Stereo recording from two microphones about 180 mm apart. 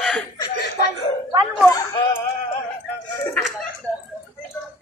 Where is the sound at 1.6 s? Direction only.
20° left (ahead or behind).